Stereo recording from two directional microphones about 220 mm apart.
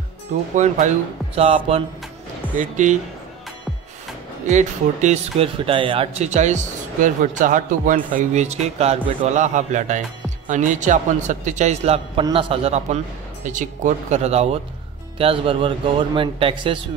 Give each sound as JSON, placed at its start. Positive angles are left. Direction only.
{"t": 0.6, "sound": "speech", "side_deg": -35}
{"t": 4.5, "sound": "speech", "side_deg": -30}